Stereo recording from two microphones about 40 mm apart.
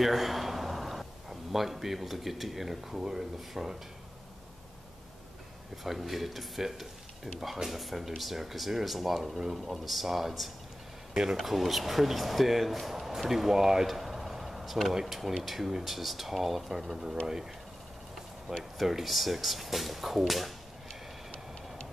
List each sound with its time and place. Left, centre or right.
0.0 s a man's voice: centre
5.9 s speech: centre
18.6 s speech: centre